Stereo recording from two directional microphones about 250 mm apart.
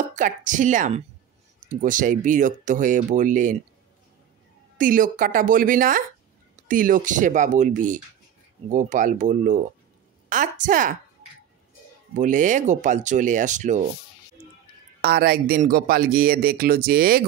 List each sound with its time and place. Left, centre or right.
0.1 s speech: right
4.7 s speech: right
12.2 s speech: right
15.0 s speech: right